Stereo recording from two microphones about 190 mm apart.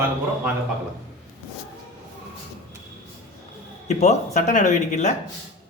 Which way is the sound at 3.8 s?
35° left (ahead or behind).